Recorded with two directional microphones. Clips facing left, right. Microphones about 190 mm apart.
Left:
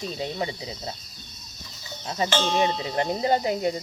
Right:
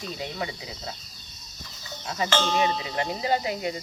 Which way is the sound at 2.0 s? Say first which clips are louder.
Left 1 dB; 25° left (ahead or behind).